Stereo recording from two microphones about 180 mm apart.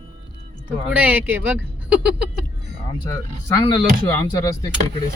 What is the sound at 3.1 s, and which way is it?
Speech, 20° left (ahead or behind).